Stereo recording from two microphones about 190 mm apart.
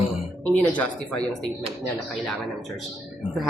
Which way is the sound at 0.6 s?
10° left (ahead or behind).